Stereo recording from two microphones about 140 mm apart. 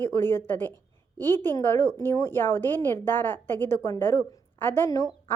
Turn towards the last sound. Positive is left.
turn(degrees=20)  # may be behind; listen again after turning